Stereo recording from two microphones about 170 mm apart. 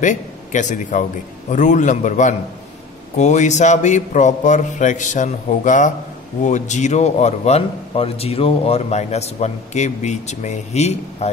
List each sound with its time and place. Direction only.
0.0 s a man's voice: 45° left (ahead or behind)